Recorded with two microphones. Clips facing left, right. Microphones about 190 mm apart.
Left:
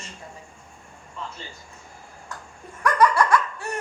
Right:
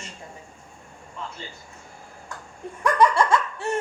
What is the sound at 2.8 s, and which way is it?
Laughter, 25° right (ahead or behind).